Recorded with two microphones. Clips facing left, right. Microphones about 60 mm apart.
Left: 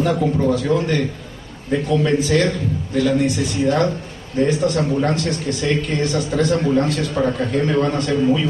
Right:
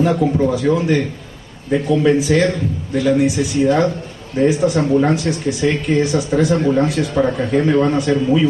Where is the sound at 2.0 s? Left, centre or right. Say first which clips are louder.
Right 4 dB; centre.